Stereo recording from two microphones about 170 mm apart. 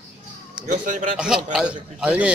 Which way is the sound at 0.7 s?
45° right (ahead or behind).